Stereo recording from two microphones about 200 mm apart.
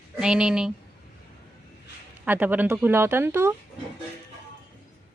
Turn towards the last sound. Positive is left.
turn(degrees=-10)  # may be behind; listen again after turning